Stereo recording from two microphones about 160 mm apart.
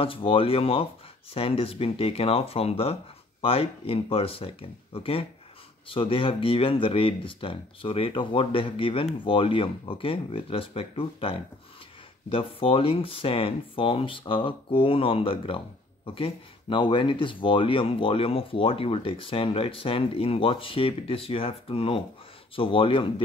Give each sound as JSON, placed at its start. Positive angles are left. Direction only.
{"t": 0.0, "sound": "speech", "side_deg": 35}